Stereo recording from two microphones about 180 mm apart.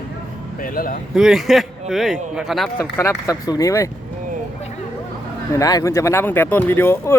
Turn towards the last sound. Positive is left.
turn(degrees=10)  # may be behind; listen again after turning